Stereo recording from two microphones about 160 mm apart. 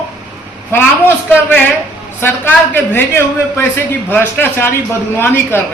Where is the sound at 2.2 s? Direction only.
15° left (ahead or behind).